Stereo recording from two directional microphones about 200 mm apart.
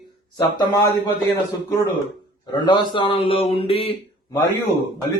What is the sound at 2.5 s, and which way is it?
Speech, 20° left (ahead or behind).